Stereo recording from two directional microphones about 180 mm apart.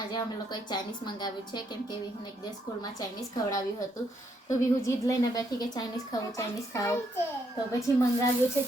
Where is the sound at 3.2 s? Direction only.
20° left (ahead or behind).